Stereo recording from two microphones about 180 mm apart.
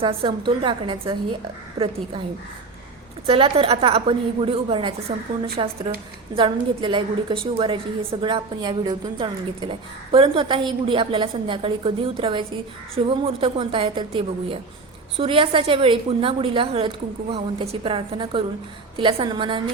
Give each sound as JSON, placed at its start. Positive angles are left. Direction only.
{"t": 0.0, "sound": "speech", "side_deg": -30}
{"t": 3.2, "sound": "a woman's voice", "side_deg": -30}